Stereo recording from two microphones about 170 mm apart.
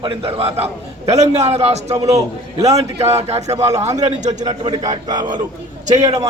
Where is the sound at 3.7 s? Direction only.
20° right (ahead or behind).